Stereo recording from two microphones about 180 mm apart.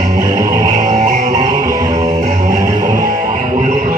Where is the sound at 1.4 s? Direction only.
20° right (ahead or behind).